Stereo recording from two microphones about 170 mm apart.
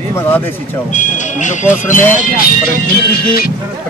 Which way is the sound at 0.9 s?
45° left (ahead or behind).